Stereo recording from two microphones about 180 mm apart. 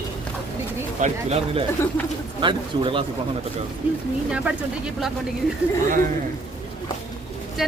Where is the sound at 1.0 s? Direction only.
35° right (ahead or behind).